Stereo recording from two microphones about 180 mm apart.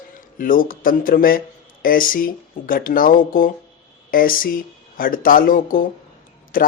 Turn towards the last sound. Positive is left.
turn(degrees=50)  # may be behind; listen again after turning